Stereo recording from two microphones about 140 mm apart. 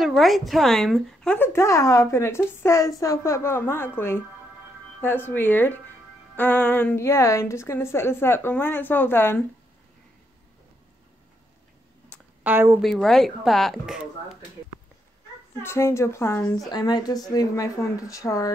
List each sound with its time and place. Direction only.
0.0 s a woman's voice: centre (ahead or behind); by 9.4 s 15° left (ahead or behind)
12.1 s a sound: 10° left (ahead or behind)
12.4 s speech: 15° right (ahead or behind)
12.8 s speech: centre (ahead or behind)
15.6 s a woman's voice: 20° left (ahead or behind)